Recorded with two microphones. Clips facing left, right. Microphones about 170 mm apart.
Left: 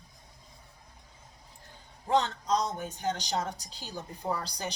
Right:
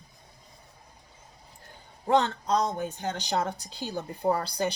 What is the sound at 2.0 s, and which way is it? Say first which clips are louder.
Speech: right 3 dB; 60° right (ahead or behind).